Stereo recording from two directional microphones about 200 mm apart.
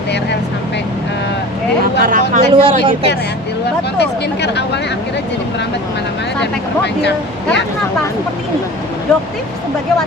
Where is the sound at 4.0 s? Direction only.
55° left (ahead or behind).